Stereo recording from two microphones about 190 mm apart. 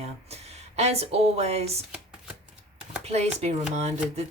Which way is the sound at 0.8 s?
35° right (ahead or behind).